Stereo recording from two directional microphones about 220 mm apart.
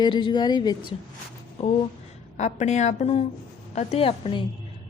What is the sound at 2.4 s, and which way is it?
A woman's voice, 30° left (ahead or behind).